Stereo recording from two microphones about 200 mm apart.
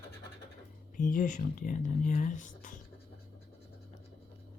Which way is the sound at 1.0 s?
40° left (ahead or behind).